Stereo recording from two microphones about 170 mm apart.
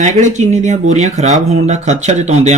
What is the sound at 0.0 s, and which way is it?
Speech, 45° right (ahead or behind).